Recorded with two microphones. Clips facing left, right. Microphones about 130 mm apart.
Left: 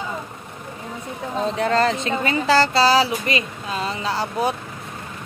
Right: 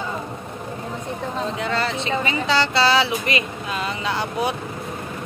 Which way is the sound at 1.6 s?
40° left (ahead or behind).